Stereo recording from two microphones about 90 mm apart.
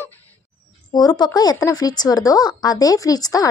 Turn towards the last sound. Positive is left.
turn(degrees=45)  # may be behind; listen again after turning